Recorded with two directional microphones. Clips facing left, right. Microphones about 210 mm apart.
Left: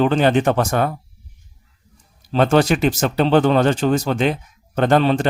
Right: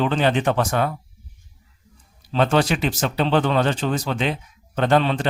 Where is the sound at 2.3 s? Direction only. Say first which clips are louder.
Left 4 dB; 45° left (ahead or behind).